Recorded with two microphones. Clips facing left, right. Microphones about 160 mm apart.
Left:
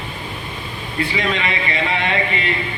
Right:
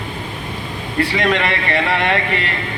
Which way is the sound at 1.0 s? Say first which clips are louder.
Right 4 dB; 70° right (ahead or behind).